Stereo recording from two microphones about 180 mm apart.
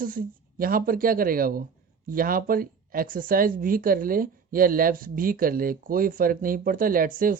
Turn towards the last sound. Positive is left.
turn(degrees=-50)  # may be behind; listen again after turning